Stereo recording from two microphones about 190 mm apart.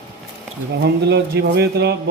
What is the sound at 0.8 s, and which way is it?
Speech, 60° right (ahead or behind).